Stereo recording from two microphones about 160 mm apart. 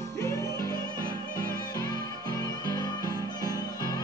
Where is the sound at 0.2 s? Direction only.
20° left (ahead or behind).